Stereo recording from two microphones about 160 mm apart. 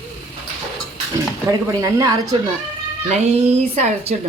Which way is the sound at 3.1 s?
40° right (ahead or behind).